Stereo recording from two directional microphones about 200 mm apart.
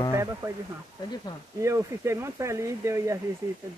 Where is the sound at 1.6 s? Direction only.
15° right (ahead or behind).